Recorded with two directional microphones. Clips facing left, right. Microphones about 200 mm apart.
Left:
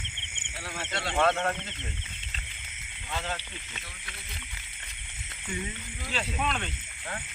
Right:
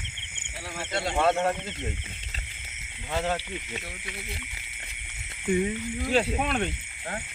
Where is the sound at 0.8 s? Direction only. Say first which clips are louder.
Right 2 dB; 10° right (ahead or behind).